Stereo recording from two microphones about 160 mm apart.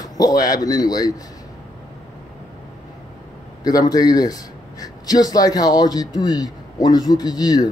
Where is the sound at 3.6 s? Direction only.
25° left (ahead or behind).